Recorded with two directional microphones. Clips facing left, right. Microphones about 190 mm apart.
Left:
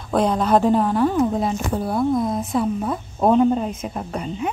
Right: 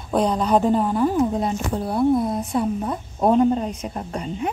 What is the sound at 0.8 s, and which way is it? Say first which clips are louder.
Speech: left 1 dB; 10° right (ahead or behind).